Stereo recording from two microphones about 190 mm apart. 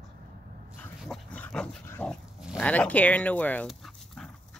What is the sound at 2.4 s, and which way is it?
Speech, 5° left (ahead or behind).